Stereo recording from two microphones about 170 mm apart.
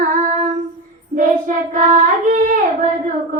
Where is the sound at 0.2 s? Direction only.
45° right (ahead or behind).